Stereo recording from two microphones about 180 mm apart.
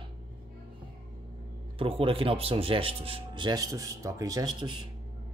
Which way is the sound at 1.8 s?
30° right (ahead or behind).